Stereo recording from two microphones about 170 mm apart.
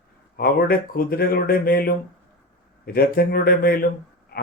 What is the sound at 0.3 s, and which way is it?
Speech, 60° left (ahead or behind).